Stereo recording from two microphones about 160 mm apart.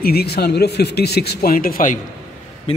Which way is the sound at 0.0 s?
80° left.